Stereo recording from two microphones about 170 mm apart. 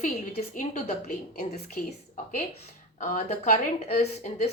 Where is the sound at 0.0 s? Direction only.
45° left (ahead or behind).